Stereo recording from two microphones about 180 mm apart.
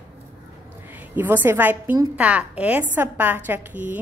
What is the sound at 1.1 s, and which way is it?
A woman's voice, 10° right (ahead or behind).